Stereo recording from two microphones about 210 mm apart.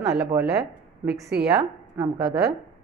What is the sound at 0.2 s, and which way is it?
Speech, 10° right (ahead or behind).